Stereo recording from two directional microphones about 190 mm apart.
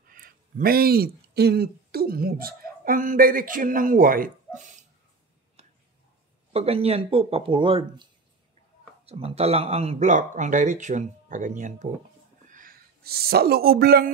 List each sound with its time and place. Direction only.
0.1 s speech: 50° right (ahead or behind)
6.5 s speech: 30° right (ahead or behind); by 14.1 s 55° right (ahead or behind)